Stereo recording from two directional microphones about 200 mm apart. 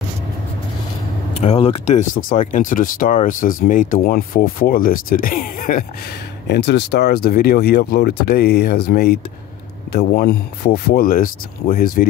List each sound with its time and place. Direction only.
1.4 s speech: 30° left (ahead or behind)
6.4 s speech: 55° left (ahead or behind)